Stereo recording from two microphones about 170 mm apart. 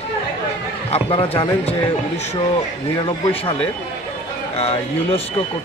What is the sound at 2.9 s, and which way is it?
Speech, 30° left (ahead or behind).